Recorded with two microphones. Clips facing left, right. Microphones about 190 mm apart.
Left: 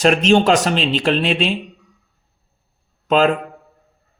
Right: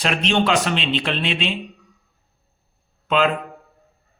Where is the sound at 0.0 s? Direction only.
40° left (ahead or behind).